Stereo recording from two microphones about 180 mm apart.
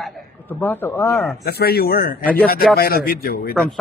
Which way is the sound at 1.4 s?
60° left (ahead or behind).